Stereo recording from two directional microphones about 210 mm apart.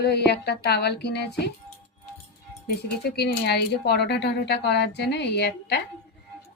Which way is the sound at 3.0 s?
50° left (ahead or behind).